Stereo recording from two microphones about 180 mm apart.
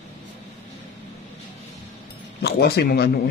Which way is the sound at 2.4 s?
60° left (ahead or behind).